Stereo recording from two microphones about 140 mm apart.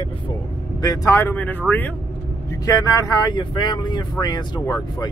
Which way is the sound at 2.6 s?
25° left (ahead or behind).